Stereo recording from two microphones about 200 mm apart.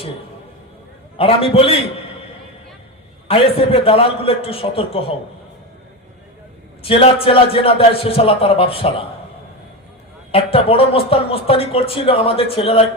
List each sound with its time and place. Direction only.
1.2 s speech: 30° left (ahead or behind)
3.2 s speech: 30° left (ahead or behind)
6.8 s speech: 30° left (ahead or behind)
10.3 s speech: 30° left (ahead or behind)